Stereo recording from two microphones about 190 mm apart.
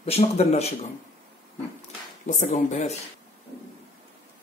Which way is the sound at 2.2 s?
40° left (ahead or behind).